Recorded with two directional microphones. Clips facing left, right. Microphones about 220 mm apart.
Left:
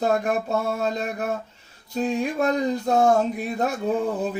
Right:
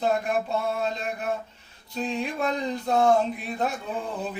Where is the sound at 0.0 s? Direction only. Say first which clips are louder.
Left 3 dB; 45° left (ahead or behind).